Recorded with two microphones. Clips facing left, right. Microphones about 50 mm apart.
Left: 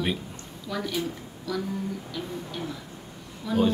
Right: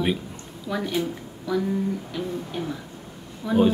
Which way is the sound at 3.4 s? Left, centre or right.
Right.